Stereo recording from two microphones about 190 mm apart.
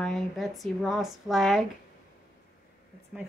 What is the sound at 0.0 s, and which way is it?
A woman's voice, centre (ahead or behind).